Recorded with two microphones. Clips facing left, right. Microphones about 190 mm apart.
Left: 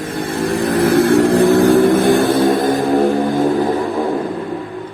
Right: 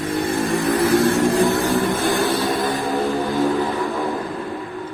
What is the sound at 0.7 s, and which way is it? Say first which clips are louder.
Vehicle: left 6 dB; 70° left (ahead or behind).